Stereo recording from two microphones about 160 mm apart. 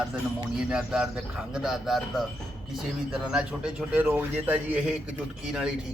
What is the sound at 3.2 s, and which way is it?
A man's voice, 5° right (ahead or behind).